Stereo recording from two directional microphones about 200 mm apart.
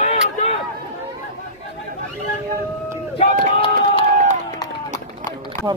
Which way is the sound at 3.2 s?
25° left (ahead or behind).